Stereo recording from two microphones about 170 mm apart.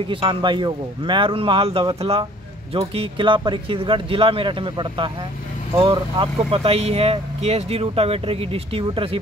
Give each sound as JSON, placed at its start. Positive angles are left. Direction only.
{"t": 0.1, "sound": "speech", "side_deg": -30}